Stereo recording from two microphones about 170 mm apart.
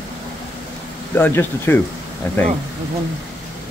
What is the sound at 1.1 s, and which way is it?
Speech, 10° left (ahead or behind).